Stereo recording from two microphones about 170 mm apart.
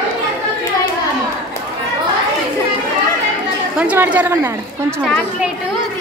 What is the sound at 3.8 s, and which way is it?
Speech, 10° right (ahead or behind).